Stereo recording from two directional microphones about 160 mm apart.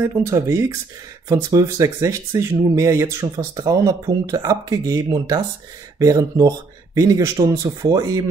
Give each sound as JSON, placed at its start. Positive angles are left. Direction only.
{"t": 0.0, "sound": "speech", "side_deg": -20}